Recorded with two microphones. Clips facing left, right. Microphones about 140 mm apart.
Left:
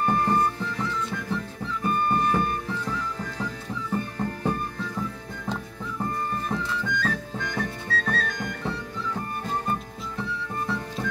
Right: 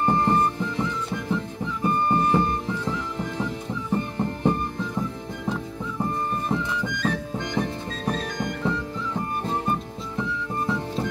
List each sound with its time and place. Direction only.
0.0 s music: 20° right (ahead or behind)
6.5 s music: 15° right (ahead or behind)